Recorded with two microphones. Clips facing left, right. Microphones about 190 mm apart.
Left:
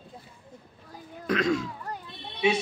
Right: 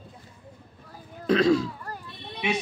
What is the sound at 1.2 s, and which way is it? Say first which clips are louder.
Speech: right 5 dB; 30° right (ahead or behind).